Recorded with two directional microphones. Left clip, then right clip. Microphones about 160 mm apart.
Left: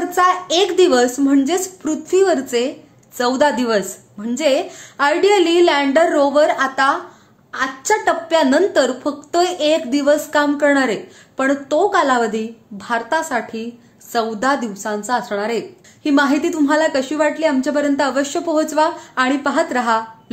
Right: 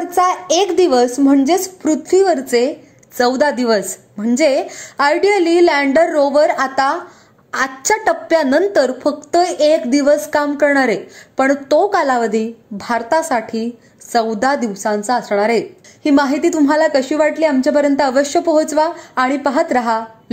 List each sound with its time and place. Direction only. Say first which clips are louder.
0.1 s a woman's voice: right 2 dB; 25° right (ahead or behind)